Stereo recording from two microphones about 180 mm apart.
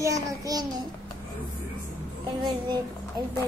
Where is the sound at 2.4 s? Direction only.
25° right (ahead or behind).